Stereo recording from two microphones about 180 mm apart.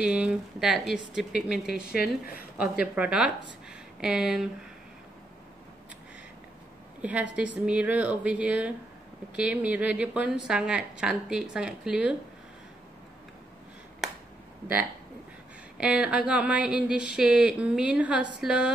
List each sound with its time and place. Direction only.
0.0 s a woman's voice: 5° right (ahead or behind)
2.0 s a woman's voice: 55° left (ahead or behind)
2.5 s a woman's voice: 5° right (ahead or behind)
7.0 s a woman's voice: 10° right (ahead or behind)
15.8 s a woman's voice: 5° right (ahead or behind)